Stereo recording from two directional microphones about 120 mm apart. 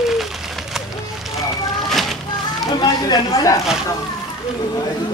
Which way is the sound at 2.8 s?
30° left (ahead or behind).